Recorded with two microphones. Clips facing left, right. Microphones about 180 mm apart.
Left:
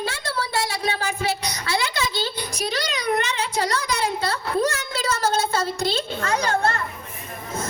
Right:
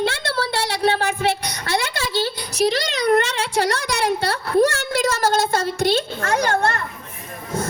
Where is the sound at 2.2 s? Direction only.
80° right.